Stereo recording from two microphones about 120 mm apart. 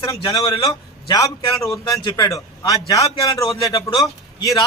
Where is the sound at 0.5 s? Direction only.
45° left (ahead or behind).